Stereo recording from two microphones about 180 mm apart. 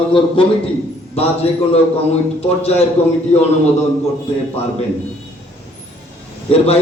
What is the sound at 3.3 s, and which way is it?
Speech, 35° left (ahead or behind).